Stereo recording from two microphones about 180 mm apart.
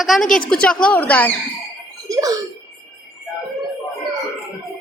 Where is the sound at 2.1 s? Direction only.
20° right (ahead or behind).